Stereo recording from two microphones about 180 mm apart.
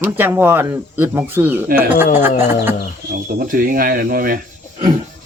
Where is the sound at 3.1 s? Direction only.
55° right (ahead or behind).